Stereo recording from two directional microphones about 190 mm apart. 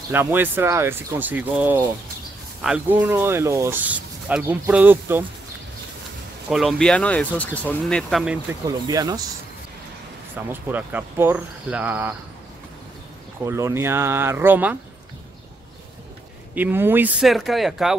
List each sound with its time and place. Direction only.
0.1 s speech: 10° right (ahead or behind)
6.5 s speech: centre (ahead or behind)
8.6 s speech: 20° right (ahead or behind)
10.5 s speech: 10° right (ahead or behind)
13.5 s speech: 15° right (ahead or behind)
16.5 s speech: 10° right (ahead or behind)